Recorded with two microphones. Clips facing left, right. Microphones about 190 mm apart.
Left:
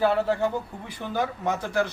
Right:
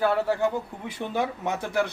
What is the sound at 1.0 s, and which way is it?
Speech, 20° right (ahead or behind).